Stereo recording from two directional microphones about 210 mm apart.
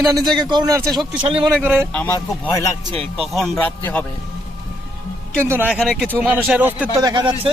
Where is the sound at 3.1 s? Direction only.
Centre (ahead or behind).